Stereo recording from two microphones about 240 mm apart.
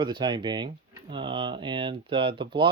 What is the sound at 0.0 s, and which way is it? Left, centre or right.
Speech, centre.